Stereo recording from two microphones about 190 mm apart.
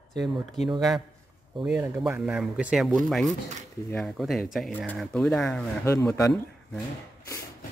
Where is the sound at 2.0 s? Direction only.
5° right (ahead or behind).